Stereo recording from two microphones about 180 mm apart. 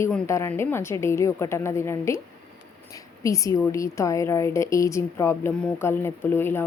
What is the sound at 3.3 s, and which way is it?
A woman's voice, 20° left (ahead or behind).